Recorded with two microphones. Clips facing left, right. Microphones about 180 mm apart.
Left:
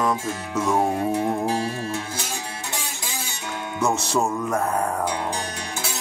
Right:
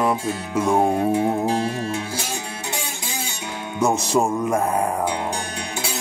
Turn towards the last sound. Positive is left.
turn(degrees=-10)  # may be behind; listen again after turning